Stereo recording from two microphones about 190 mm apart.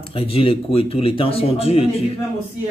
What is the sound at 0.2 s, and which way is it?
Speech, 30° left (ahead or behind).